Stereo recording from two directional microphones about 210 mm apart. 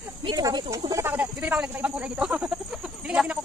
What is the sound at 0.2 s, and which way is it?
Snake, 20° right (ahead or behind).